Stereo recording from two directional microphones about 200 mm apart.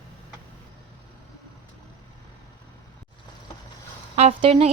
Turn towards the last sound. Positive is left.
turn(degrees=-30)  # may be behind; listen again after turning